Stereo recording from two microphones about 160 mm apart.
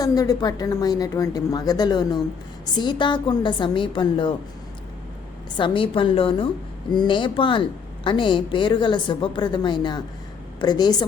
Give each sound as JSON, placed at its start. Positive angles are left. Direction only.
{"t": 0.0, "sound": "a woman's voice", "side_deg": 25}
{"t": 5.5, "sound": "a woman's voice", "side_deg": 30}